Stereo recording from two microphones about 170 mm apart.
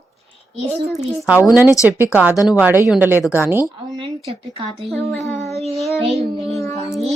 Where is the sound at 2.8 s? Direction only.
10° right (ahead or behind).